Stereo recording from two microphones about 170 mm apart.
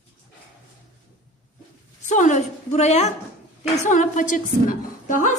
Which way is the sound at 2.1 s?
45° left (ahead or behind).